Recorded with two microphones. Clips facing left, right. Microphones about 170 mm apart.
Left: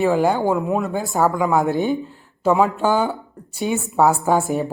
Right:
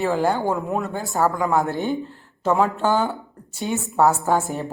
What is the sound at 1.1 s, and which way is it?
A woman's voice, 15° left (ahead or behind).